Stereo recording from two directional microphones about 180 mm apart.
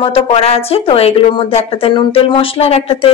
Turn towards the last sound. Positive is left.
turn(degrees=35)  # may be behind; listen again after turning